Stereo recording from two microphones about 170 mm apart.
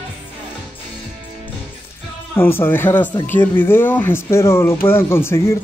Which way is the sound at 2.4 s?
10° left (ahead or behind).